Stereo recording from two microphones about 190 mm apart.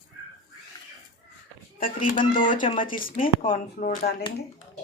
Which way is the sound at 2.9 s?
45° left (ahead or behind).